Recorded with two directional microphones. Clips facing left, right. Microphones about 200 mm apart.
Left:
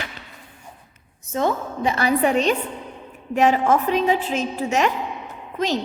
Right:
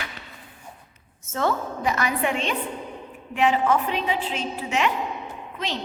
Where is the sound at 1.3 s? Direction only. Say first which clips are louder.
Left 2 dB; 15° left (ahead or behind); by 5.8 s 45° left (ahead or behind).